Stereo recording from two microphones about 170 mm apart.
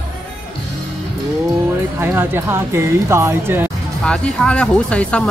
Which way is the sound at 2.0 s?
15° right (ahead or behind).